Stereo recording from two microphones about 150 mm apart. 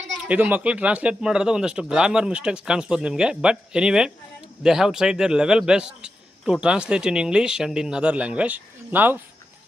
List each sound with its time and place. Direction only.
0.3 s a man's voice: 10° right (ahead or behind)